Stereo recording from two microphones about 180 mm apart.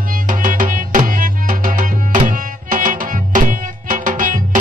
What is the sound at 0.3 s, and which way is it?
Music, 45° right (ahead or behind).